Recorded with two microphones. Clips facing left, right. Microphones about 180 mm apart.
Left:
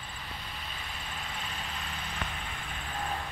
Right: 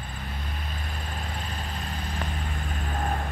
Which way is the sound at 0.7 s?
45° right (ahead or behind).